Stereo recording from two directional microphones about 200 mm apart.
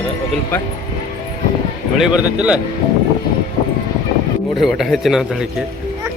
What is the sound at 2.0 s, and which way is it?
Speech, 5° right (ahead or behind).